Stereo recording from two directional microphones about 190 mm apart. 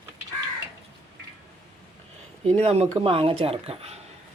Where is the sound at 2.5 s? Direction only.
35° right (ahead or behind).